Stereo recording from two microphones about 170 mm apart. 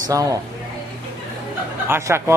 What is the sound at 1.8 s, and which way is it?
Speech, 15° right (ahead or behind).